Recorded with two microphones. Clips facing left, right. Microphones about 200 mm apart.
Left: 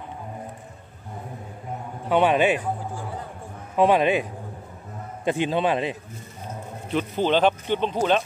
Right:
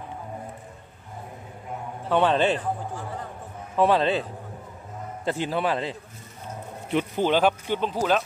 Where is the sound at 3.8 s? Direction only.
15° left (ahead or behind).